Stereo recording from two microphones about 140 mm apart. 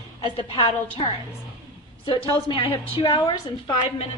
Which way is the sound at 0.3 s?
40° left (ahead or behind).